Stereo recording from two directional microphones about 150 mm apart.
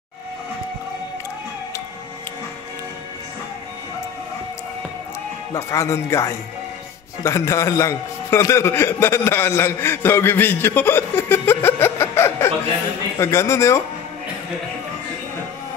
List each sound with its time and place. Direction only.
5.5 s a man's voice: 20° left (ahead or behind)